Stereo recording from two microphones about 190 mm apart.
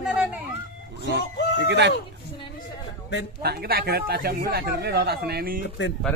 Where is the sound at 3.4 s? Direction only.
55° right (ahead or behind).